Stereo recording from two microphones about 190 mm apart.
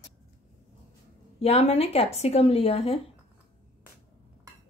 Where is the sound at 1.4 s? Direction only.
35° left (ahead or behind).